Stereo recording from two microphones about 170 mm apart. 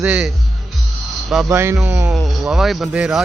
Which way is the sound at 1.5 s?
15° right (ahead or behind).